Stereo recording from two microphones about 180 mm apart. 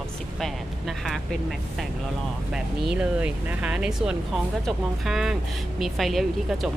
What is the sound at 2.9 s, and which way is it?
Speech, 5° right (ahead or behind).